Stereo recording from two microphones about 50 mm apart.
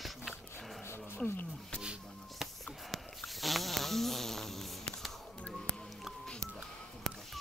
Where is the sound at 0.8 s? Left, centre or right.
Left.